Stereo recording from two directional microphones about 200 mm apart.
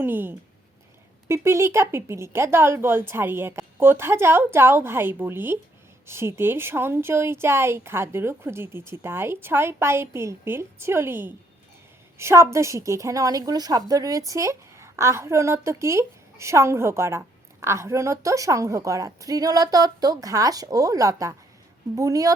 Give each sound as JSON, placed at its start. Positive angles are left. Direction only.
{"t": 0.0, "sound": "a woman's voice", "side_deg": -10}